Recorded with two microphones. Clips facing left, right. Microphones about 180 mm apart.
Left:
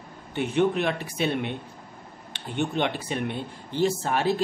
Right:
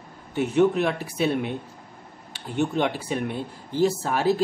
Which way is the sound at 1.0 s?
5° right (ahead or behind).